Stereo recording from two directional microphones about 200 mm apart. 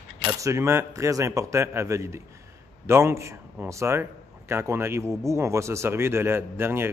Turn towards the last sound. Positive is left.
turn(degrees=-10)  # may be behind; listen again after turning